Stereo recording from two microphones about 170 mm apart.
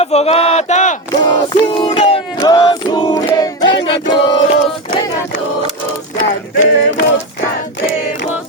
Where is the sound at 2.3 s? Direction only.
25° left (ahead or behind).